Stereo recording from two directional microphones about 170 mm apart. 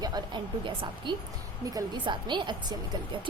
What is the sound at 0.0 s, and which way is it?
Speech, 25° right (ahead or behind).